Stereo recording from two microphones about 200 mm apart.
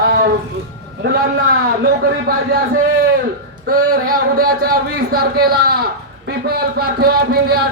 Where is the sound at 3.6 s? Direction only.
45° right (ahead or behind).